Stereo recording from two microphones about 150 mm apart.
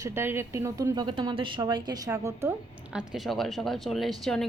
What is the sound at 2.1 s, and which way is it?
Speech, 20° right (ahead or behind).